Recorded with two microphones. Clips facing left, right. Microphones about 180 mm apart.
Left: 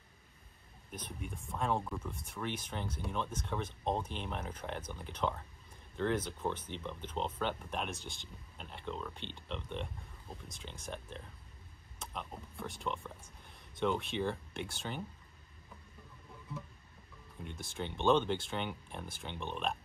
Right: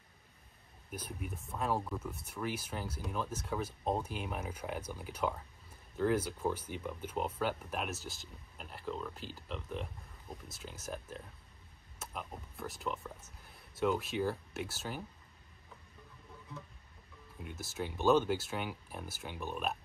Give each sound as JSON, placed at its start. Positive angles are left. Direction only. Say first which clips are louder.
{"t": 0.9, "sound": "speech", "louder": "right 2 dB", "side_deg": -5}
{"t": 17.4, "sound": "speech", "louder": "right 1 dB", "side_deg": -5}